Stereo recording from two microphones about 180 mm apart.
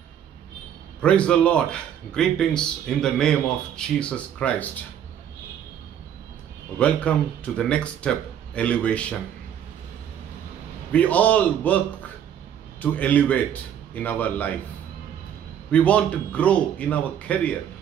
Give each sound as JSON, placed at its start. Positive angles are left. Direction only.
{"t": 1.0, "sound": "speech", "side_deg": 5}
{"t": 6.8, "sound": "speech", "side_deg": 5}
{"t": 10.9, "sound": "speech", "side_deg": 10}
{"t": 12.8, "sound": "speech", "side_deg": 10}
{"t": 15.7, "sound": "speech", "side_deg": 5}